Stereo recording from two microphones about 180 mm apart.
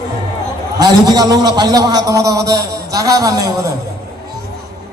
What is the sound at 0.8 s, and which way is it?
A man's voice, 20° right (ahead or behind).